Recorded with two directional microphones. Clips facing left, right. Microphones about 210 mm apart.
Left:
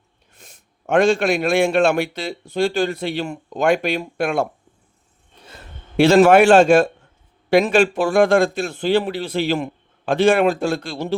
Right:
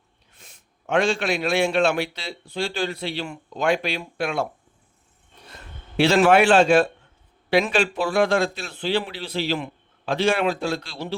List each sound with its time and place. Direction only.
0.3 s a man's voice: 45° left (ahead or behind)
6.0 s a man's voice: 45° left (ahead or behind)